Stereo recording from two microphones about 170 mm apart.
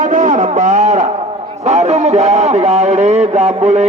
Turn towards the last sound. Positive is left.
turn(degrees=-40)  # may be behind; listen again after turning